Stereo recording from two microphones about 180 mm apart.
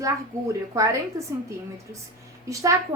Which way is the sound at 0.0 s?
20° right (ahead or behind).